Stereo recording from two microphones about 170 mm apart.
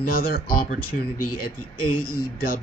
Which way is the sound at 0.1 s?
60° left (ahead or behind).